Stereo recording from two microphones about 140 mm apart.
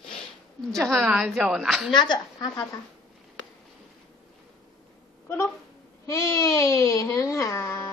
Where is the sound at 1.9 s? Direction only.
35° left (ahead or behind).